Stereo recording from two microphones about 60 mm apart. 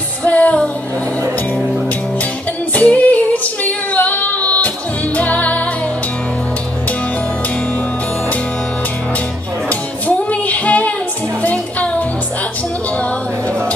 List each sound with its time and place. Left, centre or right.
0.2 s music: left
2.7 s female singing: left
5.1 s music: left
9.7 s music: left